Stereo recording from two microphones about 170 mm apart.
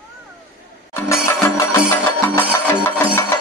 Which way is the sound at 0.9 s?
15° left (ahead or behind).